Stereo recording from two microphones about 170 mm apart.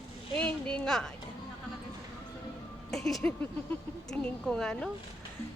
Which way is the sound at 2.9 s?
Centre (ahead or behind).